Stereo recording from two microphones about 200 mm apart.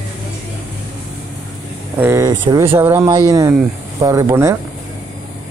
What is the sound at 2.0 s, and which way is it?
Speech, 15° right (ahead or behind).